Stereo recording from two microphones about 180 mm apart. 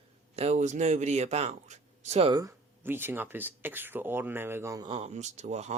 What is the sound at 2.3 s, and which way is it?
Speech, 20° right (ahead or behind).